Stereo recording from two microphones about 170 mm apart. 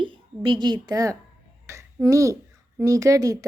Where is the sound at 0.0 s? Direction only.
30° right (ahead or behind).